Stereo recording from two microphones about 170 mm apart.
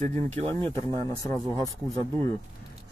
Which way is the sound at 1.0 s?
20° left (ahead or behind).